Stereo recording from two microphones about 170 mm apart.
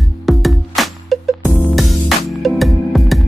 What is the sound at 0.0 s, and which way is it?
Music, centre (ahead or behind).